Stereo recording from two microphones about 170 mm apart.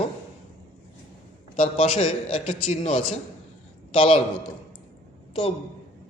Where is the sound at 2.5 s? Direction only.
45° left (ahead or behind).